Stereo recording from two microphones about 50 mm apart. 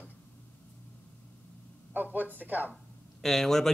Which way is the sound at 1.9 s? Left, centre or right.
Right.